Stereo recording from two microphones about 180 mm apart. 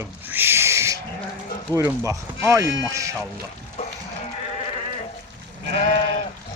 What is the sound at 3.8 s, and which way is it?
Livestock, 35° left (ahead or behind).